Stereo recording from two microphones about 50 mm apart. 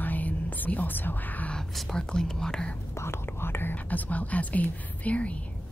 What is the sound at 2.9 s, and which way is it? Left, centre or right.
Whispering, left.